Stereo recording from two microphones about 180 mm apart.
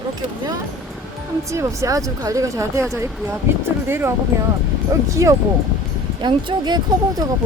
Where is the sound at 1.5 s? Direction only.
15° right (ahead or behind).